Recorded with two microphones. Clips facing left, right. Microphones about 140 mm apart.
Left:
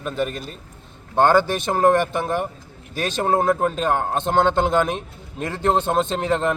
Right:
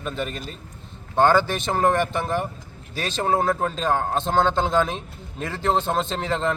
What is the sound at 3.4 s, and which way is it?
A man's voice, 10° left (ahead or behind).